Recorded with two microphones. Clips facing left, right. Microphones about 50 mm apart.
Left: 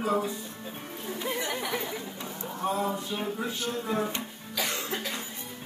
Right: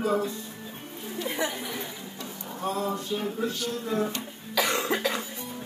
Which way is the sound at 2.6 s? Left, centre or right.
Centre.